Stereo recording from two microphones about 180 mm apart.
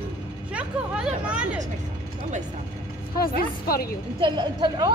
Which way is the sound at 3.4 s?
55° left (ahead or behind).